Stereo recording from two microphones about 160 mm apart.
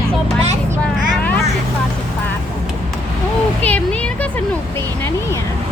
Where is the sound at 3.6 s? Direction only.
10° left (ahead or behind).